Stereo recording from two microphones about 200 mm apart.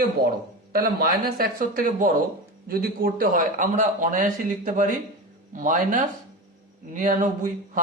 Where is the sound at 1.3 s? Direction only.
45° right (ahead or behind).